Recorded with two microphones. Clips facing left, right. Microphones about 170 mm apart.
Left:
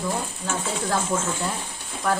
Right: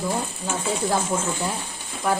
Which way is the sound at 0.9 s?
10° right (ahead or behind).